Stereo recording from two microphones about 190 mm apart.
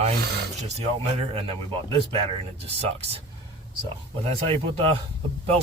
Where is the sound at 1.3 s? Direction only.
30° right (ahead or behind).